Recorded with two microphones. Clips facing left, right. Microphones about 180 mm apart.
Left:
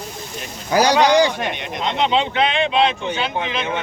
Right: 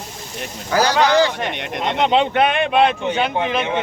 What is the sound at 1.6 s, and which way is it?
Speech, 60° right (ahead or behind).